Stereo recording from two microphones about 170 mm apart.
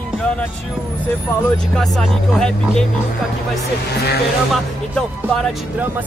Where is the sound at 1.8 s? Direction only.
5° left (ahead or behind).